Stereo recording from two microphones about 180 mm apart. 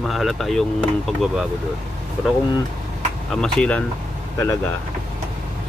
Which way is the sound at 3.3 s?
5° left (ahead or behind).